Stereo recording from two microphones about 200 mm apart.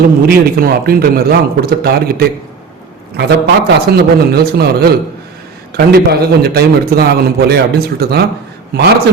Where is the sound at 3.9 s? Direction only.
50° right (ahead or behind).